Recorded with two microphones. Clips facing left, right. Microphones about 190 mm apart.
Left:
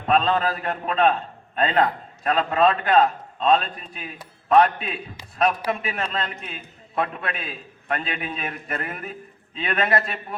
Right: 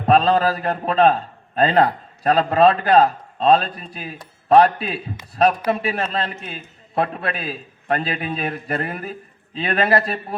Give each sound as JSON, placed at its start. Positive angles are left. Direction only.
{"t": 0.0, "sound": "a man's voice", "side_deg": -40}